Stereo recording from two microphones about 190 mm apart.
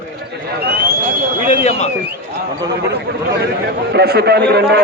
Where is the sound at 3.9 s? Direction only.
60° right (ahead or behind).